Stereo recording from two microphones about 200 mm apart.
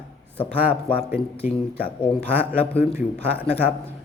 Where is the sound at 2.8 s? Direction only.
10° right (ahead or behind).